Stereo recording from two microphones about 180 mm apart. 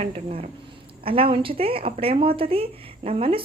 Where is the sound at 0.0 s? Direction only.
35° right (ahead or behind).